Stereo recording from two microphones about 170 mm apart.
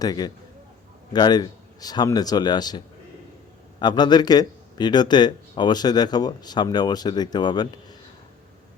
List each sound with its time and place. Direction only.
0.0 s speech: 25° left (ahead or behind)